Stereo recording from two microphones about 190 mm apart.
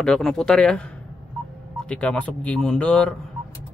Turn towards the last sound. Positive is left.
turn(degrees=5)  # may be behind; listen again after turning